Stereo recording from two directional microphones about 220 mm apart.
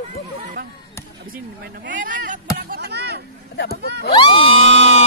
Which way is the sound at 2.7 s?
50° right (ahead or behind).